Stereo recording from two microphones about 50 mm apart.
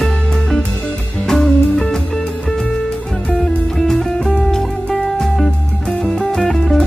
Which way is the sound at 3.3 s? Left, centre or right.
Centre.